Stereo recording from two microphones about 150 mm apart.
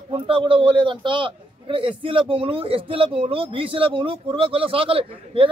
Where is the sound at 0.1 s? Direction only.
35° right (ahead or behind).